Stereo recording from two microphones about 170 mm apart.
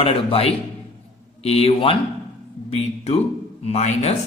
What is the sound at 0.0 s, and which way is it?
A man's voice, 35° left (ahead or behind).